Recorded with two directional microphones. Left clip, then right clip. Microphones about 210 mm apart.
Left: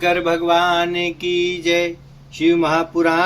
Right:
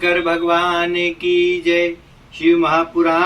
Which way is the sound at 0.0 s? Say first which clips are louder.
Right 1 dB; 55° left (ahead or behind).